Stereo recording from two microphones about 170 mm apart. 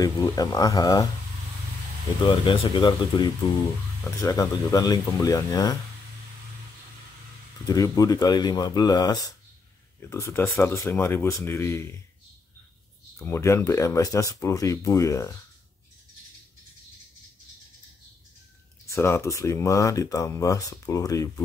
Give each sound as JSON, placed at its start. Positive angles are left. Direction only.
{"t": 0.0, "sound": "speech", "side_deg": 20}
{"t": 2.2, "sound": "speech", "side_deg": 30}
{"t": 7.6, "sound": "speech", "side_deg": 20}
{"t": 13.2, "sound": "speech", "side_deg": 15}
{"t": 18.9, "sound": "speech", "side_deg": 15}